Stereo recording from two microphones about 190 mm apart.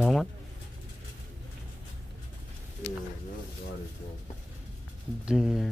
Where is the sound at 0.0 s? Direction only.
Centre (ahead or behind).